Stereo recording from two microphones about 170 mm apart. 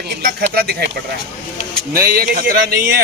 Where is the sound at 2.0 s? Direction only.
60° right (ahead or behind).